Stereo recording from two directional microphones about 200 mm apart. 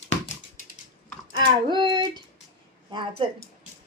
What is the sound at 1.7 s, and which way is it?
Speech, 25° right (ahead or behind).